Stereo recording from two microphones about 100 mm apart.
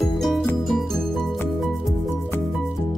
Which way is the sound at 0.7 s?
Centre (ahead or behind).